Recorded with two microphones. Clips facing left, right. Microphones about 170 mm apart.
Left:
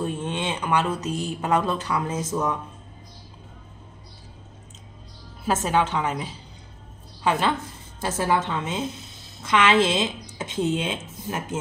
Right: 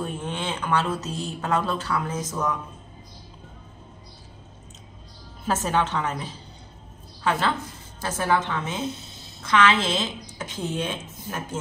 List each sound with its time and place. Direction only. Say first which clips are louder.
0.0 s speech: left 3 dB; 25° left (ahead or behind)
5.4 s a woman's voice: left 2 dB; 10° left (ahead or behind)
7.2 s a woman's voice: left 2 dB; 15° left (ahead or behind)